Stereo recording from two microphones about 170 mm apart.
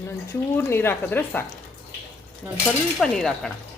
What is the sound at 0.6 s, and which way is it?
Speech, 15° left (ahead or behind).